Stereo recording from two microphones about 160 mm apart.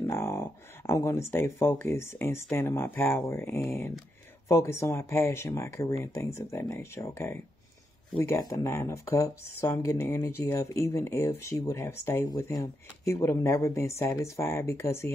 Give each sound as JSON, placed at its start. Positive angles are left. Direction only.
{"t": 0.0, "sound": "speech", "side_deg": 15}